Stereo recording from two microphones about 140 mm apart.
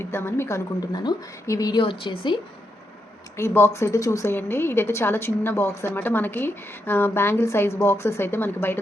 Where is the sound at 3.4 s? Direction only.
20° left (ahead or behind).